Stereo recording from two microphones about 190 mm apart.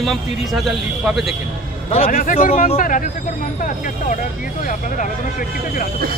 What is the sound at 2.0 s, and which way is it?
Speech, 50° left (ahead or behind).